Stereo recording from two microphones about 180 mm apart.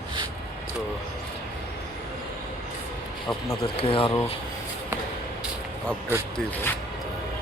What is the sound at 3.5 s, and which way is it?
Speech, 30° left (ahead or behind).